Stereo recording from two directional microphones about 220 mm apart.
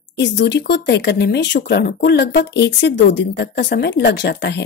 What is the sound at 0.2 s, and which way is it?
Speech, 50° left (ahead or behind).